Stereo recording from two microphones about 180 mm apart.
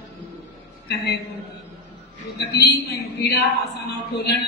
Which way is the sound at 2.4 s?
65° left (ahead or behind).